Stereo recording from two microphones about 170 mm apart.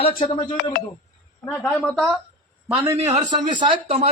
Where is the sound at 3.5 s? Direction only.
30° right (ahead or behind).